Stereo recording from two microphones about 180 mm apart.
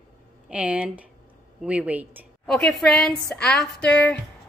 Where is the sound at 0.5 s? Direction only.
5° right (ahead or behind).